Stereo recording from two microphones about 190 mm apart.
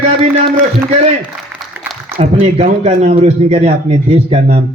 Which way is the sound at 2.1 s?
30° right (ahead or behind).